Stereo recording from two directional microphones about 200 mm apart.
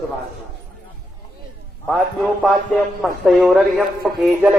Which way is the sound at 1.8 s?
Centre (ahead or behind).